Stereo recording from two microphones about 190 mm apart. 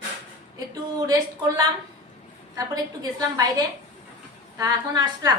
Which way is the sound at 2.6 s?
20° right (ahead or behind).